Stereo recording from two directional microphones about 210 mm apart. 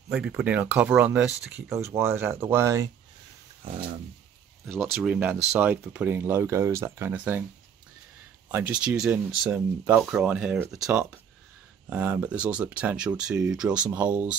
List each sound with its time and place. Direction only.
0.1 s speech: 5° right (ahead or behind)
3.6 s speech: 25° right (ahead or behind)
4.7 s speech: centre (ahead or behind)
8.5 s speech: 10° right (ahead or behind)